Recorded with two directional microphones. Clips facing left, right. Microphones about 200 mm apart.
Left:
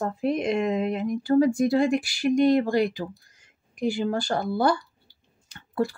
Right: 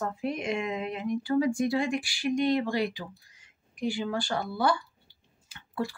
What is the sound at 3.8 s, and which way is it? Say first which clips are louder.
Speech: left 5 dB; 45° left (ahead or behind).